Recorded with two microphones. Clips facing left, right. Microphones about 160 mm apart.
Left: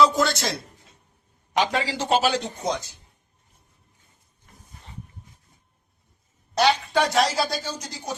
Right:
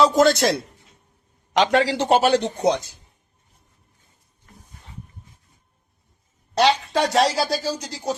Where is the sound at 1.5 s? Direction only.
75° right (ahead or behind).